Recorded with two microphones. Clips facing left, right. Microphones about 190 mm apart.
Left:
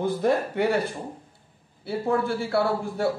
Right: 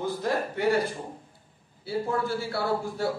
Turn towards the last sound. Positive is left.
turn(degrees=60)  # may be behind; listen again after turning